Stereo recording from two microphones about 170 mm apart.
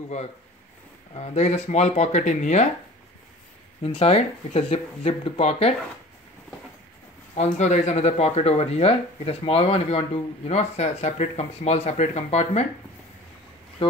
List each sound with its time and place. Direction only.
1.1 s speech: 40° left (ahead or behind)
3.8 s speech: 35° left (ahead or behind)
7.3 s speech: 40° left (ahead or behind)